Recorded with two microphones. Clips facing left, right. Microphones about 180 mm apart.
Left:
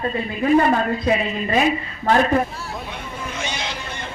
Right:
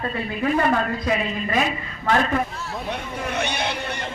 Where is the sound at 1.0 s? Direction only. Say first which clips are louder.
Left 3 dB; 30° left (ahead or behind).